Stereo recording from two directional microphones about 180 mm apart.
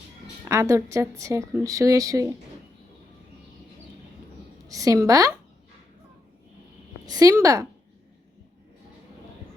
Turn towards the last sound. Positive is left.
turn(degrees=-15)  # may be behind; listen again after turning